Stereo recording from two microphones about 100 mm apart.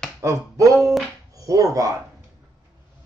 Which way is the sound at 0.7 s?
Centre (ahead or behind).